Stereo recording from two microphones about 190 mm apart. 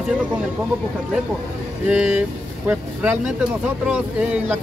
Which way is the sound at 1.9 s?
10° right (ahead or behind).